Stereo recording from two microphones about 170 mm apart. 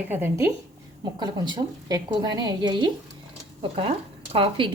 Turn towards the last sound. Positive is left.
turn(degrees=-30)  # may be behind; listen again after turning